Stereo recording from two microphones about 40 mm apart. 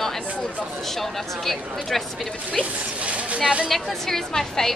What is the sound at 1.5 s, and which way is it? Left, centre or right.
Speech, centre.